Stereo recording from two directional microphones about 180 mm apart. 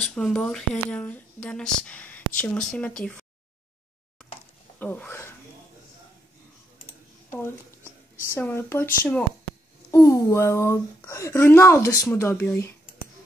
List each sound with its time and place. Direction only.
0.0 s speech: 5° left (ahead or behind)
4.7 s speech: 10° left (ahead or behind)
7.2 s speech: 10° left (ahead or behind)